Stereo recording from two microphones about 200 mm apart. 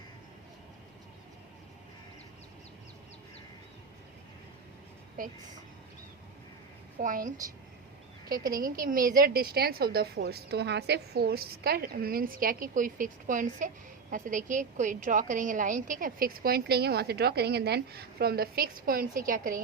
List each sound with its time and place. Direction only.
7.0 s a woman's voice: 40° right (ahead or behind)